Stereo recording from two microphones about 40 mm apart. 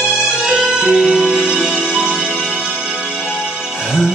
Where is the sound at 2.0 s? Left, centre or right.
Centre.